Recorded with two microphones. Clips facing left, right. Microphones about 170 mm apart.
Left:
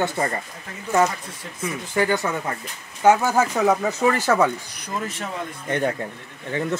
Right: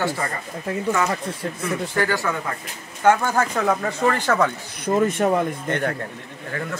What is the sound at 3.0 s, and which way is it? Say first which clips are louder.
Speech: left 1 dB; 10° left (ahead or behind).